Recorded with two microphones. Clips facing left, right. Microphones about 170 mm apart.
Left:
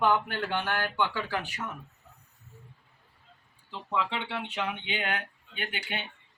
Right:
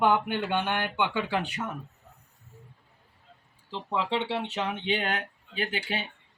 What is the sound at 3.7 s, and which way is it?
Speech, 30° right (ahead or behind).